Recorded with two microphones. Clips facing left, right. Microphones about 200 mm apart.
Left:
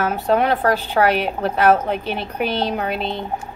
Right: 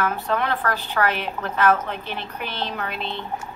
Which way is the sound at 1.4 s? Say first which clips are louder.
Left 4 dB; 35° left (ahead or behind).